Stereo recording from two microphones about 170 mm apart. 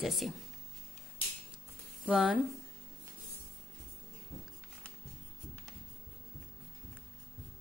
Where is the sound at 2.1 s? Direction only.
5° right (ahead or behind).